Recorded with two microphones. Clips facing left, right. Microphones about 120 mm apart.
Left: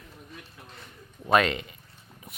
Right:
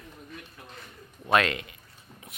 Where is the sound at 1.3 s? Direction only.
Centre (ahead or behind).